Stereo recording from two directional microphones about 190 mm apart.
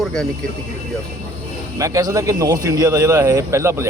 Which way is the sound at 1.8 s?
20° right (ahead or behind).